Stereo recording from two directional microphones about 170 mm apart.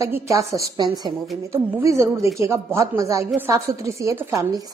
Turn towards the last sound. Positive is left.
turn(degrees=-15)  # may be behind; listen again after turning